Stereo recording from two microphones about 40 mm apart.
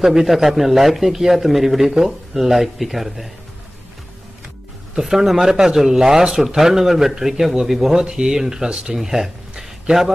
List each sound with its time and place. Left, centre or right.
0.0 s a man's voice: centre
4.9 s a man's voice: centre
7.9 s a man's voice: centre
8.9 s speech: centre